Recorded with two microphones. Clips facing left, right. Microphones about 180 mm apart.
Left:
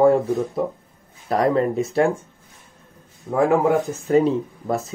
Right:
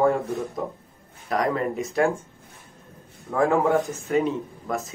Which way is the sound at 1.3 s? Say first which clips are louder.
Left 5 dB; 30° left (ahead or behind).